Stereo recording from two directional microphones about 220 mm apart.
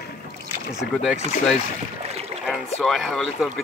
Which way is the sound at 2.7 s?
Centre (ahead or behind).